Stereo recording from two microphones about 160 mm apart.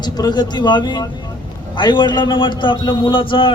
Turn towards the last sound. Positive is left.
turn(degrees=30)  # may be behind; listen again after turning